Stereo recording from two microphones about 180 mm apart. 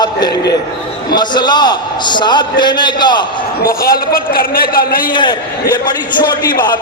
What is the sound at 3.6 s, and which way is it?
A man's voice, 55° left (ahead or behind).